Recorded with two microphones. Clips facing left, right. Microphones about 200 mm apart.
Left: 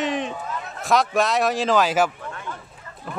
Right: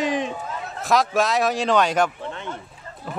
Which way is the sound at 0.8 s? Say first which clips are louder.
Even; centre (ahead or behind).